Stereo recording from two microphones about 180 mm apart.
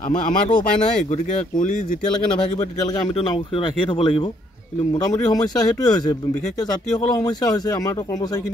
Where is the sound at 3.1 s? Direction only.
30° left (ahead or behind).